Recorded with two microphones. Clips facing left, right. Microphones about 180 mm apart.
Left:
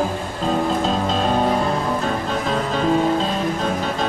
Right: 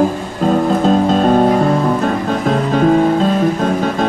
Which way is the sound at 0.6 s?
50° right (ahead or behind).